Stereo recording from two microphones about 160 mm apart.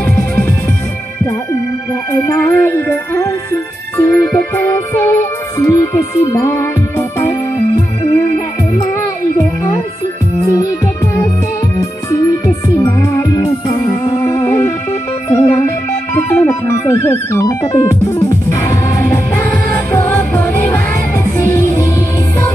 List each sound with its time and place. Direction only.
0.0 s music: 10° left (ahead or behind)
2.2 s music: 10° left (ahead or behind)
8.9 s music: 15° left (ahead or behind)
11.8 s music: 20° left (ahead or behind)